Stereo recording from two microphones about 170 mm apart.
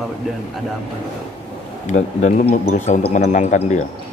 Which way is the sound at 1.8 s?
45° left (ahead or behind).